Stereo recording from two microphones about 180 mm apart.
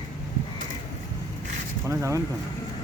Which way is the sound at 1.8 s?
15° right (ahead or behind).